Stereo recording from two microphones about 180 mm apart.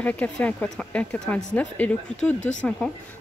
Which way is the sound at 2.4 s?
40° left (ahead or behind).